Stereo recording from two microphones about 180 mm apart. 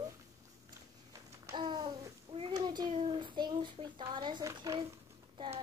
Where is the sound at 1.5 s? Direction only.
20° right (ahead or behind).